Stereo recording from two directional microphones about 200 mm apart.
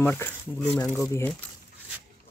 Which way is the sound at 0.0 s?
10° left (ahead or behind).